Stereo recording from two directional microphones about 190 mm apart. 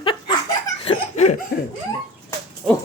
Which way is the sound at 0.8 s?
35° left (ahead or behind).